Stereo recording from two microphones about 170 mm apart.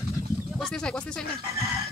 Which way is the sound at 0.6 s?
5° left (ahead or behind).